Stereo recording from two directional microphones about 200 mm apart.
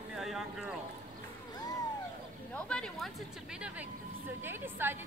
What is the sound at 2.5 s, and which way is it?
A woman's voice, 5° left (ahead or behind).